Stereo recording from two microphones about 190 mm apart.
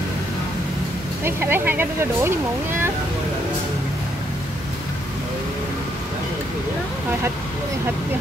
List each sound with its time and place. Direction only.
1.2 s speech: 10° right (ahead or behind)